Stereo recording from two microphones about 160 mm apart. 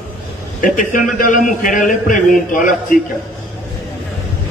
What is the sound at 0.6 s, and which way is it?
A man's voice, 60° left (ahead or behind).